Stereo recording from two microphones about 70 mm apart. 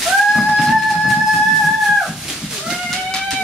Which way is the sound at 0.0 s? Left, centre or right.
Centre.